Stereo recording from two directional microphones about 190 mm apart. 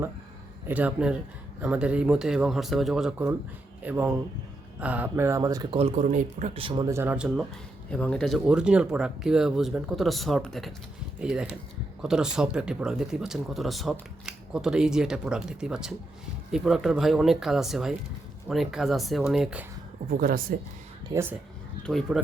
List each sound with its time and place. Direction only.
0.7 s speech: 5° right (ahead or behind)
5.7 s speech: 35° right (ahead or behind)
6.9 s speech: 10° right (ahead or behind)
7.9 s speech: 5° left (ahead or behind)
20.1 s speech: 45° right (ahead or behind)
21.1 s speech: 15° right (ahead or behind)
21.8 s speech: centre (ahead or behind)